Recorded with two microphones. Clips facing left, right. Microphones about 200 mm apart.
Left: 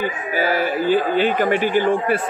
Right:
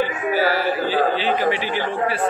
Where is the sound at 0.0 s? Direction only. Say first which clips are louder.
Right 2 dB; 50° left (ahead or behind).